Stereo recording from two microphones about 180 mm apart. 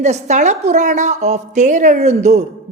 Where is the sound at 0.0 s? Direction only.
40° right (ahead or behind).